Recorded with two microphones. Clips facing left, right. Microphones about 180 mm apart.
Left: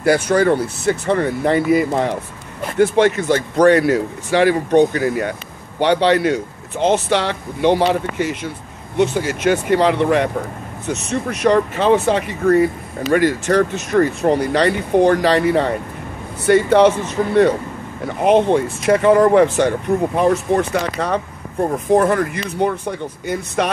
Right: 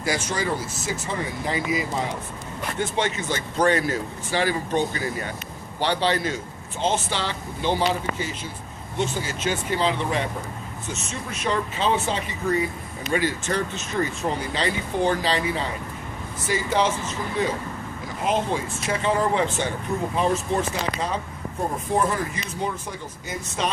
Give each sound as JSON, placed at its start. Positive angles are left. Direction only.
{"t": 0.0, "sound": "speech", "side_deg": 60}